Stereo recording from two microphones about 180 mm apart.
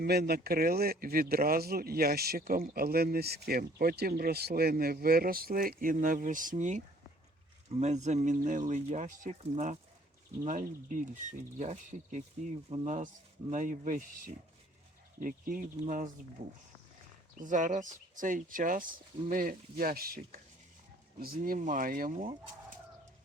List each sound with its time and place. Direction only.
0.0 s speech: 60° right (ahead or behind)
15.2 s speech: 50° right (ahead or behind)
17.4 s speech: 45° right (ahead or behind)